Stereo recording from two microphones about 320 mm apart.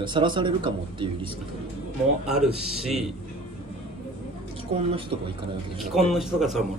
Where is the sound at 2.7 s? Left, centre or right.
Centre.